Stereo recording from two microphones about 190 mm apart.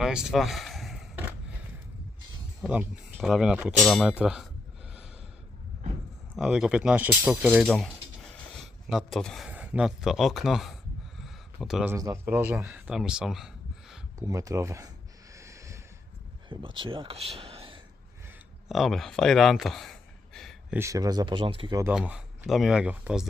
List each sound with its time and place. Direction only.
0.0 s a sound: 5° right (ahead or behind)
2.6 s speech: 5° right (ahead or behind)
6.3 s speech: centre (ahead or behind)
11.2 s a sound: centre (ahead or behind)
11.9 s speech: 15° right (ahead or behind)
14.2 s speech: 15° right (ahead or behind)
15.3 s snort: 15° right (ahead or behind)
16.5 s speech: 25° right (ahead or behind)
18.7 s speech: centre (ahead or behind)
20.7 s speech: 15° right (ahead or behind)
21.9 s speech: 5° right (ahead or behind)